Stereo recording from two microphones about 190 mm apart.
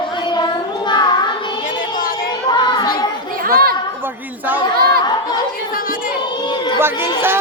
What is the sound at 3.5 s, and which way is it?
Chatter, 50° right (ahead or behind).